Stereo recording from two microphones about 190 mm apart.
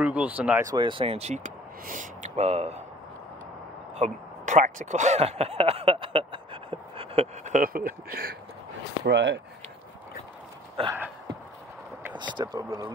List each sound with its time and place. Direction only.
0.0 s speech: 5° right (ahead or behind)
0.7 s speech: 25° right (ahead or behind)
3.9 s speech: 40° right (ahead or behind); by 8.4 s 55° right (ahead or behind)
9.0 s speech: 65° right (ahead or behind)
10.8 s speech: 30° right (ahead or behind)
12.2 s speech: 25° right (ahead or behind)